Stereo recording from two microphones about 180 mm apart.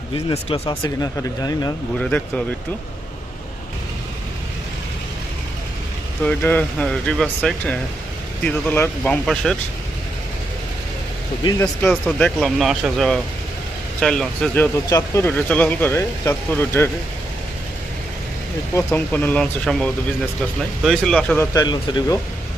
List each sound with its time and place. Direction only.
0.3 s speech: 30° left (ahead or behind)
0.8 s speech: 20° left (ahead or behind)
2.0 s speech: 5° left (ahead or behind)
6.2 s speech: 10° left (ahead or behind)
11.8 s speech: 5° left (ahead or behind)
18.7 s speech: 15° left (ahead or behind)
21.5 s speech: 25° left (ahead or behind)